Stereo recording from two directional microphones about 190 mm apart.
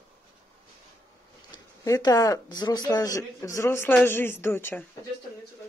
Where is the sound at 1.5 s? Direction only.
20° left (ahead or behind).